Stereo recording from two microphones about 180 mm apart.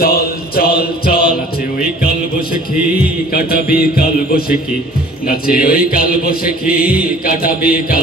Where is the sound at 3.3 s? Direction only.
55° left (ahead or behind).